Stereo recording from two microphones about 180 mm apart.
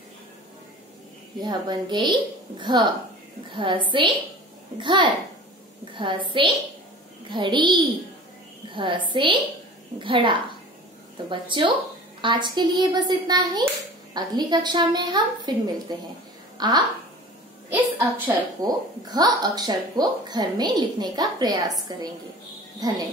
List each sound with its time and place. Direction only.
1.4 s speech: 20° right (ahead or behind)
17.6 s a woman's voice: 10° right (ahead or behind)
18.6 s speech: 20° right (ahead or behind)
22.8 s speech: 20° right (ahead or behind)